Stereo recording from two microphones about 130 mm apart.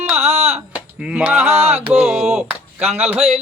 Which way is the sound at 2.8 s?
55° right (ahead or behind).